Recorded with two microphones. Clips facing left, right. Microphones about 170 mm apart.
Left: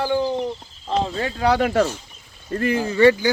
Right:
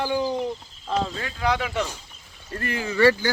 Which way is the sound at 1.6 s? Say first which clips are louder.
Left 9 dB; 55° left (ahead or behind).